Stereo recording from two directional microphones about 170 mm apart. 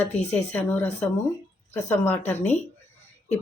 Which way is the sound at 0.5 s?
10° left (ahead or behind).